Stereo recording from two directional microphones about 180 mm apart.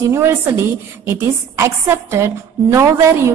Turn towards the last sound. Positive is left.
turn(degrees=-15)  # may be behind; listen again after turning